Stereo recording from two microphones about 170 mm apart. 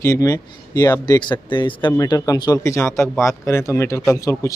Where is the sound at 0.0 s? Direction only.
20° left (ahead or behind).